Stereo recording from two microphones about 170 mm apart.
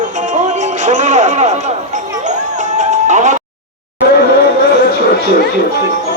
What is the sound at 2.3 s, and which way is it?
Music, 45° right (ahead or behind).